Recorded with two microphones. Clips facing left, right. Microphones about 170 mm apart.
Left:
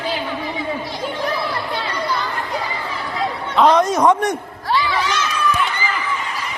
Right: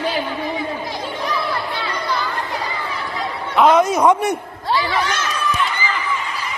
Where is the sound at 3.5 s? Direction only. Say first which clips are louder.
Right 1 dB; 5° right (ahead or behind).